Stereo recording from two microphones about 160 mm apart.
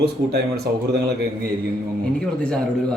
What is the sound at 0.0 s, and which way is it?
Speech, 90° right.